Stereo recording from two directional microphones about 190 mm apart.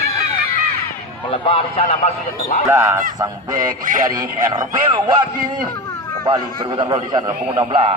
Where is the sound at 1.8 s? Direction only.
45° left (ahead or behind).